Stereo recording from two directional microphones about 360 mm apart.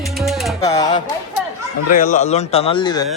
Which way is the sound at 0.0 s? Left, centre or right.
Centre.